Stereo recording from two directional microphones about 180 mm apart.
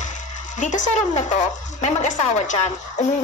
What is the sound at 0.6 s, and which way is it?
Speech, 45° left (ahead or behind).